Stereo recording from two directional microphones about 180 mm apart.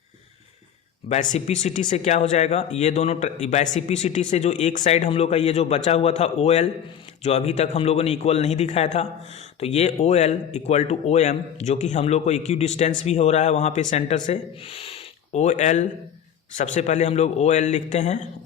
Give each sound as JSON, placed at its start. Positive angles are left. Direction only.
{"t": 1.3, "sound": "speech", "side_deg": 40}